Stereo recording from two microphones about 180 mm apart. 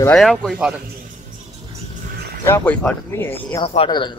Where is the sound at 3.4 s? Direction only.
30° left (ahead or behind).